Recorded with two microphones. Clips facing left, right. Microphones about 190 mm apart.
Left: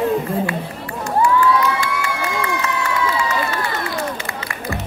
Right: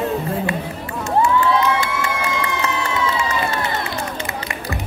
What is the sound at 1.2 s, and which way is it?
Crowd, 25° right (ahead or behind).